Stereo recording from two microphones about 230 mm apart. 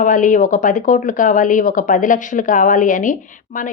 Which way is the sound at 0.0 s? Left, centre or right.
Left.